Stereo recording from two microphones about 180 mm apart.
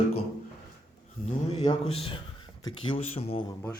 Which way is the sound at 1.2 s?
35° left (ahead or behind).